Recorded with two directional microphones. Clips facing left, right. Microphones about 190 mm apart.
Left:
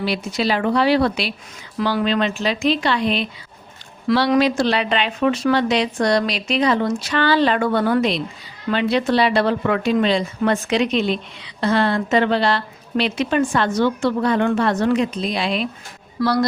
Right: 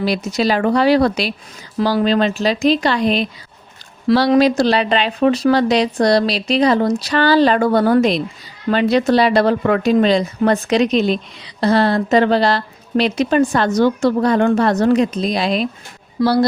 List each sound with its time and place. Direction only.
0.0 s speech: 40° right (ahead or behind)